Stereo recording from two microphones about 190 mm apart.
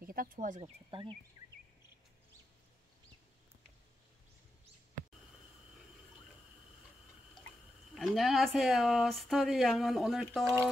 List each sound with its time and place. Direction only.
0.0 s speech: 50° right (ahead or behind)
0.6 s speech: 25° right (ahead or behind)
7.9 s speech: centre (ahead or behind)